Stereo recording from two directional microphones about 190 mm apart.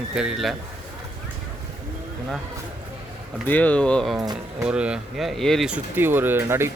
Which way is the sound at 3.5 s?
10° left (ahead or behind).